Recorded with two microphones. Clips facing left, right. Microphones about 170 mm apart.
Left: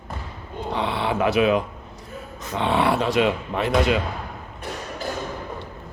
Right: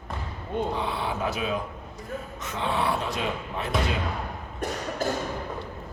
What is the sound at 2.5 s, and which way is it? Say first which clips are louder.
Speech: left 6 dB; 70° left (ahead or behind).